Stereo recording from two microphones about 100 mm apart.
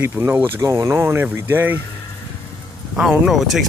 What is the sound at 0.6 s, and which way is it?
Speech, 35° right (ahead or behind).